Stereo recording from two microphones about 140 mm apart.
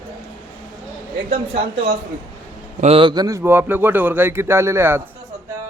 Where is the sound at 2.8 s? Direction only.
40° right (ahead or behind); by 5.0 s 15° right (ahead or behind).